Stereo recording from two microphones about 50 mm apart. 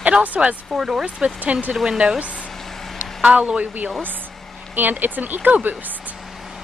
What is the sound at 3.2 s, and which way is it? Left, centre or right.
Speech, right.